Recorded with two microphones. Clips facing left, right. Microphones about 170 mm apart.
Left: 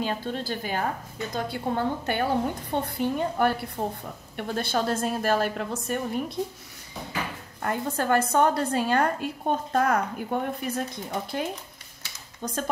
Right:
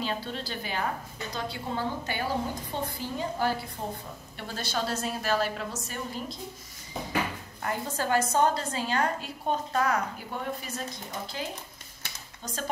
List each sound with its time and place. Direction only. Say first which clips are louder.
0.0 s a woman's voice: left 4 dB; 45° left (ahead or behind)
7.6 s a woman's voice: left 4 dB; 55° left (ahead or behind)